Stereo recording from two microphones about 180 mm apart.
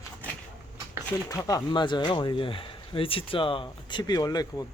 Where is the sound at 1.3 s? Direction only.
20° left (ahead or behind).